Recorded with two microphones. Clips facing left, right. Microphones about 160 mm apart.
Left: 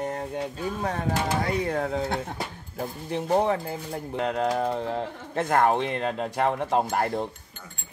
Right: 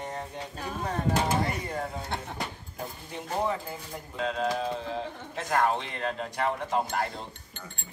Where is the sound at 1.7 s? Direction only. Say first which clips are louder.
Left 7 dB; 85° left.